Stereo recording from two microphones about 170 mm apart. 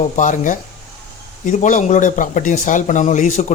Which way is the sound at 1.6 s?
45° left (ahead or behind).